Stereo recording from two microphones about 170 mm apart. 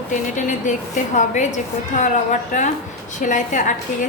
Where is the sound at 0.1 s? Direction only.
45° left (ahead or behind).